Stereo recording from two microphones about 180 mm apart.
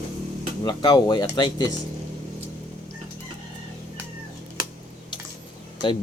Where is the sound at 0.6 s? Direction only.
25° left (ahead or behind).